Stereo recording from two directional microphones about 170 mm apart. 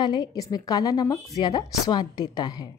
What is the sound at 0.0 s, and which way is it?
A woman's voice, 25° left (ahead or behind).